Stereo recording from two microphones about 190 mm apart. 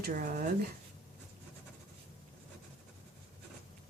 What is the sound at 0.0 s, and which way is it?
Speech, 50° right (ahead or behind).